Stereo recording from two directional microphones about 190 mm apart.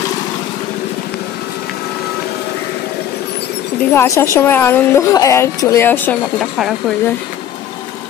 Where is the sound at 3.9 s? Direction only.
15° left (ahead or behind).